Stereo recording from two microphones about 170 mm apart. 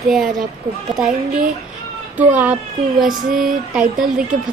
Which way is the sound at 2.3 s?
10° right (ahead or behind).